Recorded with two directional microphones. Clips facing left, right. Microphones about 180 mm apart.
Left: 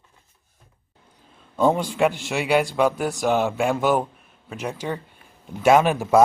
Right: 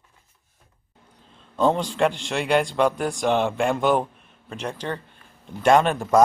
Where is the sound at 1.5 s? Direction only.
10° left (ahead or behind).